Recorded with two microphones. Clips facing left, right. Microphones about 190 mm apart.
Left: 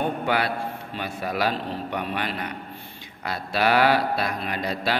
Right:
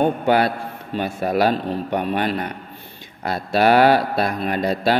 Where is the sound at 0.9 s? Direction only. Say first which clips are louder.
Right 9 dB; 45° right (ahead or behind).